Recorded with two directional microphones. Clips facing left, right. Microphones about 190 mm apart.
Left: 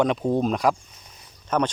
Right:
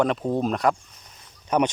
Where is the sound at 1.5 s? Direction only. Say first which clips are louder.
Right 2 dB; 15° right (ahead or behind).